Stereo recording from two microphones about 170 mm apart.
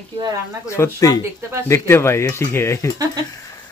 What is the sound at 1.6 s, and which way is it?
Speech, 15° left (ahead or behind).